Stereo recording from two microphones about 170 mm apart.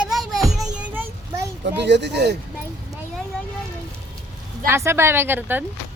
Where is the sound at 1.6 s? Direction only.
90° right.